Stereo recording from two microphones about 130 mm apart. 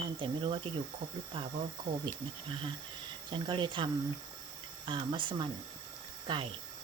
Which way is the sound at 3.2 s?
40° right (ahead or behind).